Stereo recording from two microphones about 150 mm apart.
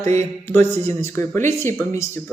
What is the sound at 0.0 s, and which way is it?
A man's voice, 15° left (ahead or behind).